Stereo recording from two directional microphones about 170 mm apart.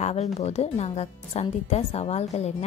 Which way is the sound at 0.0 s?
40° left (ahead or behind).